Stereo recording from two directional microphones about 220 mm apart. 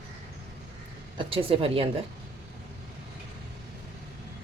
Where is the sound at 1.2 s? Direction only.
25° right (ahead or behind).